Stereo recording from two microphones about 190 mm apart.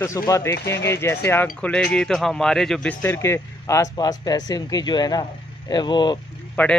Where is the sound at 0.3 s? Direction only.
15° left (ahead or behind).